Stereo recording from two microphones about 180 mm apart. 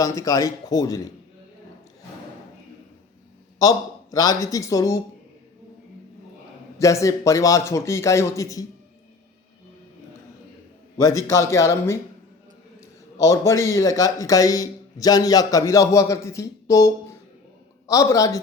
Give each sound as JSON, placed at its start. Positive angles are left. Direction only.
{"t": 0.0, "sound": "speech", "side_deg": 20}
{"t": 3.6, "sound": "speech", "side_deg": 20}
{"t": 6.7, "sound": "a man's voice", "side_deg": 15}
{"t": 10.9, "sound": "a man's voice", "side_deg": 15}
{"t": 13.1, "sound": "a man's voice", "side_deg": 15}